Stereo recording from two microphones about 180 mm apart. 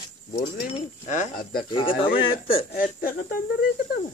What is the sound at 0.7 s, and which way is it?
Speech, 45° left (ahead or behind).